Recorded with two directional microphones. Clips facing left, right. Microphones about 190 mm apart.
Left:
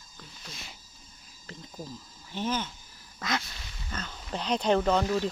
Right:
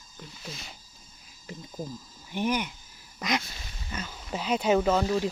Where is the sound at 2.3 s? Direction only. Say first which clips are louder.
Right 3 dB; 15° right (ahead or behind).